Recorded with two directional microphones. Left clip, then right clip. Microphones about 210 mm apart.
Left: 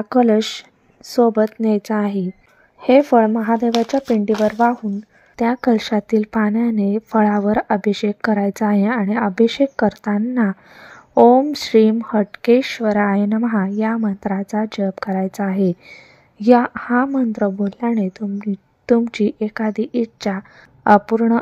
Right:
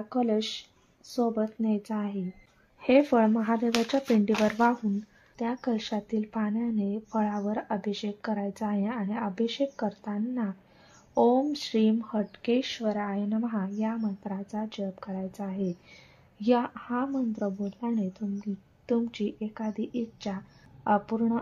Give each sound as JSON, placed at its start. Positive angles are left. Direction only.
{"t": 0.1, "sound": "speech", "side_deg": 40}
{"t": 2.8, "sound": "speech", "side_deg": 25}
{"t": 4.5, "sound": "speech", "side_deg": 15}
{"t": 5.3, "sound": "a woman's voice", "side_deg": 40}